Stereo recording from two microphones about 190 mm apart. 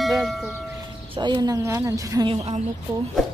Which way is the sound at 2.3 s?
30° right (ahead or behind).